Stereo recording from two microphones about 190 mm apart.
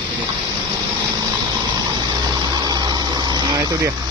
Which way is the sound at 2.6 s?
20° right (ahead or behind).